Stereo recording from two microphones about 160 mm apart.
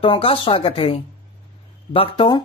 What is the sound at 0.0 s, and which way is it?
Speech, 35° left (ahead or behind).